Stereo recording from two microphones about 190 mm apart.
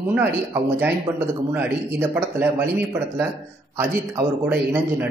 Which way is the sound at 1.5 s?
10° right (ahead or behind).